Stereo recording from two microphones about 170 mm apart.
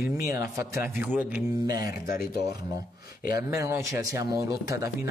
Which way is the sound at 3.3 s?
15° right (ahead or behind).